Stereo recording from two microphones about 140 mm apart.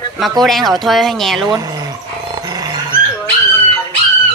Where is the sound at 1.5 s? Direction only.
30° right (ahead or behind).